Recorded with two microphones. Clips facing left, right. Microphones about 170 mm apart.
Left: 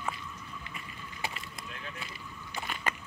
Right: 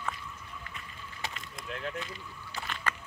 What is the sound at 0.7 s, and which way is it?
Vehicle, 10° left (ahead or behind).